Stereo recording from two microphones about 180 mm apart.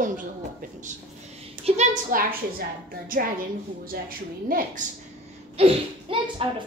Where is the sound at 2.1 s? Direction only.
50° right (ahead or behind).